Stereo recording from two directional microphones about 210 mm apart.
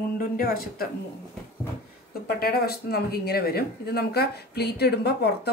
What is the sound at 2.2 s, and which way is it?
Speech, 50° left (ahead or behind).